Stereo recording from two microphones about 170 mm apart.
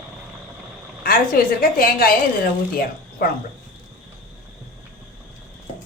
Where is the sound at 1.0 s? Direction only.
60° left (ahead or behind).